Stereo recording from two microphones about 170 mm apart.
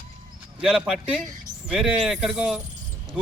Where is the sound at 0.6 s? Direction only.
5° right (ahead or behind).